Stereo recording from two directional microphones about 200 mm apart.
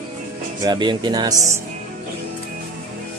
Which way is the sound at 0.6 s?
20° right (ahead or behind).